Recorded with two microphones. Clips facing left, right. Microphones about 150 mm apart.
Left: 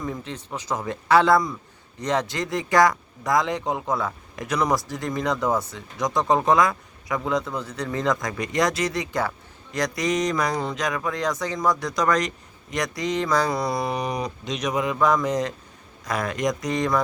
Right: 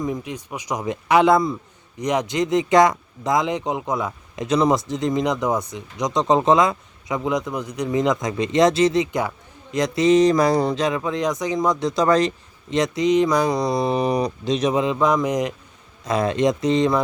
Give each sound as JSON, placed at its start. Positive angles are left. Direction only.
{"t": 0.0, "sound": "speech", "side_deg": -15}